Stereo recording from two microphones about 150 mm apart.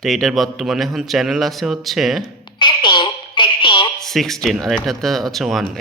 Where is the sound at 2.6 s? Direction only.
30° left (ahead or behind).